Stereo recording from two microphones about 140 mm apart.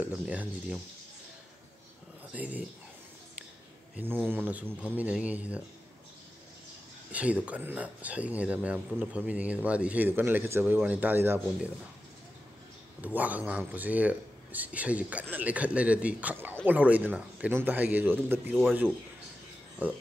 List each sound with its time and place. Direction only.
0.0 s speech: 10° right (ahead or behind)
2.3 s speech: 10° right (ahead or behind)
3.9 s speech: 15° right (ahead or behind)
7.1 s speech: 10° right (ahead or behind)
13.0 s speech: 10° right (ahead or behind)